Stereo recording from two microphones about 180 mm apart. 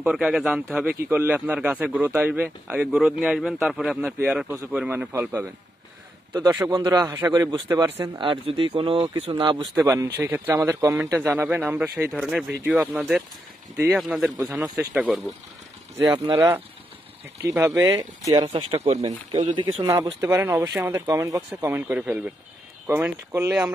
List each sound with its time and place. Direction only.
0.0 s a man's voice: 5° right (ahead or behind)
16.3 s speech: 15° right (ahead or behind); by 19.0 s 35° right (ahead or behind)
19.8 s speech: 15° right (ahead or behind)